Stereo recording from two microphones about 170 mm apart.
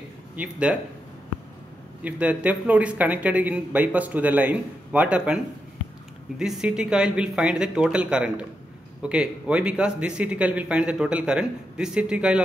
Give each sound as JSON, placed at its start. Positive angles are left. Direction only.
{"t": 0.4, "sound": "speech", "side_deg": -5}
{"t": 2.0, "sound": "speech", "side_deg": -10}